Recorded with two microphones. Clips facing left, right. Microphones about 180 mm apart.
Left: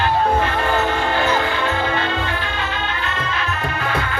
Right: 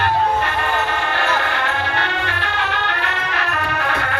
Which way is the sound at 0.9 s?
70° right (ahead or behind).